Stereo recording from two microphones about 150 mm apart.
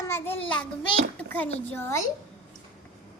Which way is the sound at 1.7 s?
15° left (ahead or behind).